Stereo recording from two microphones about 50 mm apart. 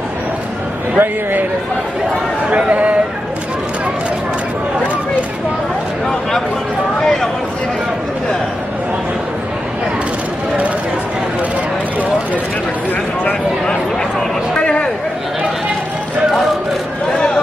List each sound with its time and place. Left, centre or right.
0.9 s speech: right
2.5 s speech: right
14.6 s a sound: left